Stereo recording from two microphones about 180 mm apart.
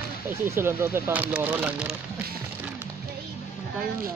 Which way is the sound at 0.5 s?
15° right (ahead or behind).